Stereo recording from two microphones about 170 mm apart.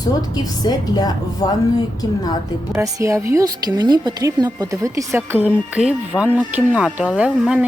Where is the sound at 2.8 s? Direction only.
15° right (ahead or behind).